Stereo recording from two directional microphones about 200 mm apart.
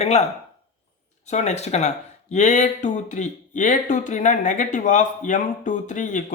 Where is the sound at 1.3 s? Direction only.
35° left (ahead or behind).